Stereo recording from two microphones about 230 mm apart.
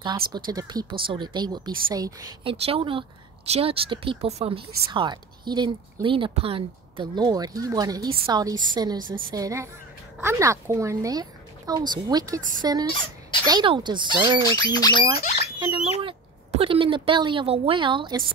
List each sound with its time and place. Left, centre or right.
0.3 s a woman's voice: centre
12.4 s speech: right
12.6 s a woman's voice: centre
14.6 s speech: centre
15.1 s speech: left
15.6 s a woman's voice: centre